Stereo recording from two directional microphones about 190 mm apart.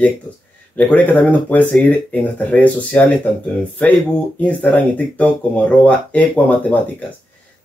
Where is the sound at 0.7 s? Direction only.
10° left (ahead or behind).